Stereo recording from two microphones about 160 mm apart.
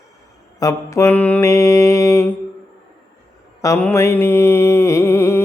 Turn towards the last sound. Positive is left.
turn(degrees=15)  # may be behind; listen again after turning